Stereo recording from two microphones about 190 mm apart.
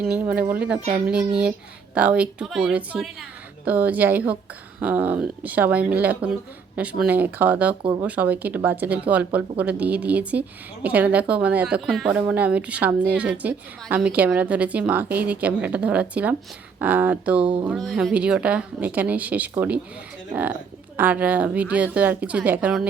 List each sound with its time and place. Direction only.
0.0 s a woman's voice: 5° right (ahead or behind)
7.8 s speech: 25° right (ahead or behind)
8.0 s a woman's voice: 10° right (ahead or behind)
20.9 s a woman's voice: 10° right (ahead or behind)